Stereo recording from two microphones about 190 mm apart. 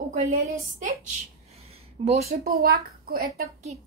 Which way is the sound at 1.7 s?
35° right (ahead or behind).